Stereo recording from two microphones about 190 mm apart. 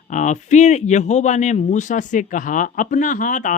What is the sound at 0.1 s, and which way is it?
Speech, 40° left (ahead or behind).